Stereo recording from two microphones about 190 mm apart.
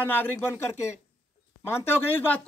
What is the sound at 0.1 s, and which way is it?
Speech, 10° left (ahead or behind).